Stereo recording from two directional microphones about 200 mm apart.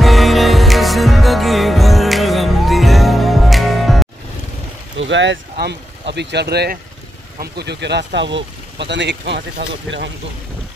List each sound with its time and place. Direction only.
0.0 s music: centre (ahead or behind)
4.9 s speech: 65° right (ahead or behind)